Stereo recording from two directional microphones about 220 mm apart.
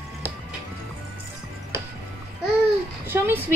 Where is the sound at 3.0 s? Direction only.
10° right (ahead or behind).